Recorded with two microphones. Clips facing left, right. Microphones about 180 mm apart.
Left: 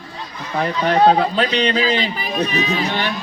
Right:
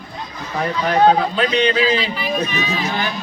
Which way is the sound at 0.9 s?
35° left (ahead or behind).